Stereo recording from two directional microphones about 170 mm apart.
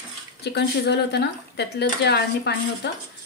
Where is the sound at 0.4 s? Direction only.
80° left.